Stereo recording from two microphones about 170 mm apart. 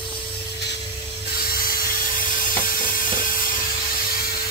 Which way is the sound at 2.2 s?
55° left (ahead or behind).